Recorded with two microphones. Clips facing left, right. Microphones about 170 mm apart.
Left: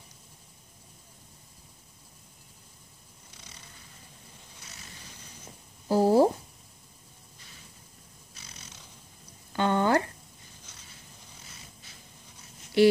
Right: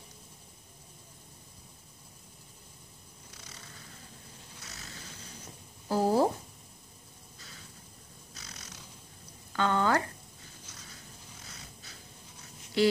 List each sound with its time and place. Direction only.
4.7 s a sound: 15° left (ahead or behind)
5.9 s speech: 15° left (ahead or behind)
9.5 s speech: 25° left (ahead or behind)